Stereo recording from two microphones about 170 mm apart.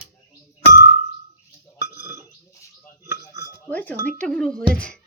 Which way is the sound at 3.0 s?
15° right (ahead or behind).